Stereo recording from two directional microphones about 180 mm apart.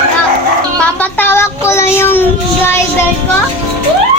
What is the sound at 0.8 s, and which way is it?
A child's voice, 10° left (ahead or behind).